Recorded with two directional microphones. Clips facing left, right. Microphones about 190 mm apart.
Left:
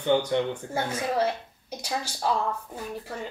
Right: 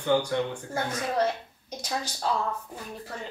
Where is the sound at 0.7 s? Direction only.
10° left (ahead or behind).